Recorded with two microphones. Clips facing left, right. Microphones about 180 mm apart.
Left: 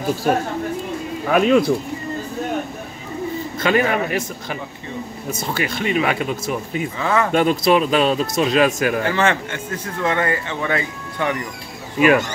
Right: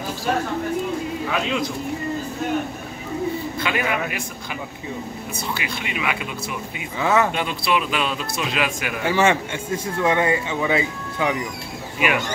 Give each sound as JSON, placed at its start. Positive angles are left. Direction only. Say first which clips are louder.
{"t": 0.3, "sound": "speech", "louder": "even", "side_deg": 50}
{"t": 3.5, "sound": "speech", "louder": "left 6 dB", "side_deg": 45}
{"t": 7.0, "sound": "speech", "louder": "right 1 dB", "side_deg": -10}
{"t": 7.3, "sound": "speech", "louder": "left 8 dB", "side_deg": 45}
{"t": 9.0, "sound": "speech", "louder": "even", "side_deg": -10}